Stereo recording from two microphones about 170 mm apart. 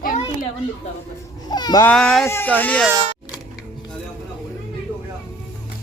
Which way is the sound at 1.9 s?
5° left (ahead or behind).